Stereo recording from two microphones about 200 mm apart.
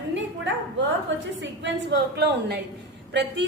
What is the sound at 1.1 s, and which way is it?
A woman's voice, 65° right (ahead or behind).